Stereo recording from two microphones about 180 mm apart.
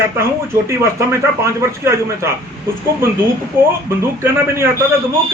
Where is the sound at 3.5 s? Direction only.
10° right (ahead or behind).